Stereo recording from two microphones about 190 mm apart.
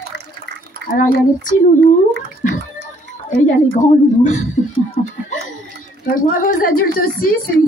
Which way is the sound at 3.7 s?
40° left (ahead or behind).